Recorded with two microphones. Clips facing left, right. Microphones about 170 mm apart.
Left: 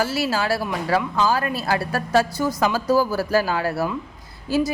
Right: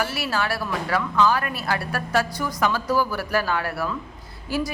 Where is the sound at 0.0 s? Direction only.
25° left (ahead or behind).